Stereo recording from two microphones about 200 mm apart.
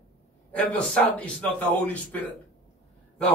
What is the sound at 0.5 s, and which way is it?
A man's voice, 5° left (ahead or behind).